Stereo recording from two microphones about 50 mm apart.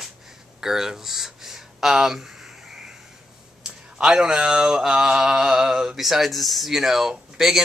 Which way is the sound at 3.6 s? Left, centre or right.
Centre.